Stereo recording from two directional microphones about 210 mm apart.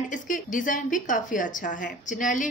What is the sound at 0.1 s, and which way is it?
A woman's voice, 40° left (ahead or behind).